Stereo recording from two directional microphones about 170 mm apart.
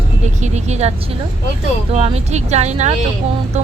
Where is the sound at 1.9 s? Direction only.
35° right (ahead or behind).